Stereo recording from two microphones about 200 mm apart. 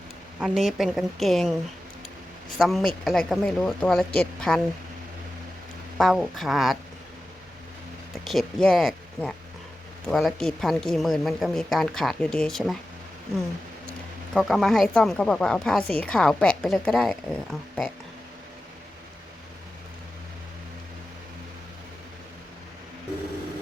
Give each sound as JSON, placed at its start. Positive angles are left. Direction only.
{"t": 0.3, "sound": "speech", "side_deg": -5}
{"t": 2.6, "sound": "speech", "side_deg": 0}
{"t": 6.0, "sound": "speech", "side_deg": 0}
{"t": 8.2, "sound": "speech", "side_deg": 0}
{"t": 14.3, "sound": "speech", "side_deg": 0}